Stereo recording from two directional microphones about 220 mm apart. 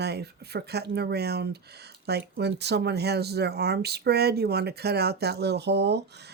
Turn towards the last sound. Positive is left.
turn(degrees=-50)  # may be behind; listen again after turning